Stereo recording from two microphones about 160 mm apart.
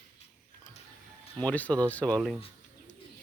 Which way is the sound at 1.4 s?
10° left (ahead or behind).